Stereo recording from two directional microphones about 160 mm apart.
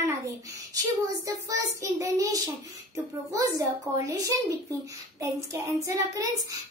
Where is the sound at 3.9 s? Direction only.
20° right (ahead or behind).